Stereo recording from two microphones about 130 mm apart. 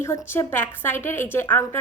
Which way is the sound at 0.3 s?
15° left (ahead or behind).